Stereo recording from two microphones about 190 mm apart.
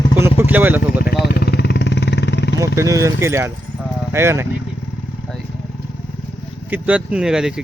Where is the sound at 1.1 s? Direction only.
60° left (ahead or behind).